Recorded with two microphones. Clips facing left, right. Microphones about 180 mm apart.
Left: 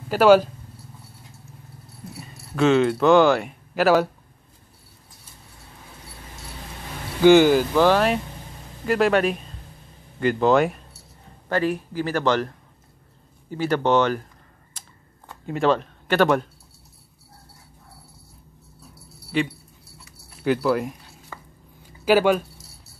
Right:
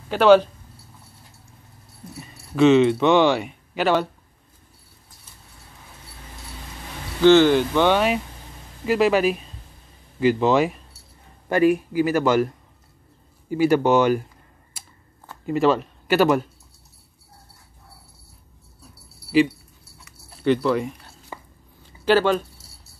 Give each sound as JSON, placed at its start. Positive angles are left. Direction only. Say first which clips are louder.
{"t": 0.1, "sound": "speech", "louder": "even", "side_deg": 5}
{"t": 2.1, "sound": "speech", "louder": "right 4 dB", "side_deg": 0}
{"t": 7.2, "sound": "speech", "louder": "even", "side_deg": 10}
{"t": 11.4, "sound": "speech", "louder": "right 5 dB", "side_deg": -10}
{"t": 14.7, "sound": "a sound", "louder": "even", "side_deg": -5}
{"t": 20.4, "sound": "speech", "louder": "right 1 dB", "side_deg": 5}
{"t": 21.3, "sound": "a sound", "louder": "right 3 dB", "side_deg": -20}
{"t": 22.0, "sound": "speech", "louder": "left 1 dB", "side_deg": 10}